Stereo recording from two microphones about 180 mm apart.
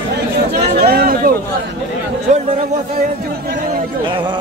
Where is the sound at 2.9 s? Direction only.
55° right (ahead or behind).